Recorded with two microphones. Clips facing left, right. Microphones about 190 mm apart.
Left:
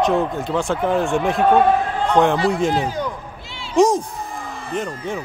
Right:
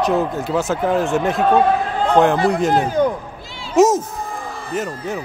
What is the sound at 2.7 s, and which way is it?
Speech, 50° right (ahead or behind).